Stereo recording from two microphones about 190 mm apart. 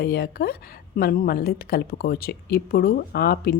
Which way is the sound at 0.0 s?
55° left (ahead or behind).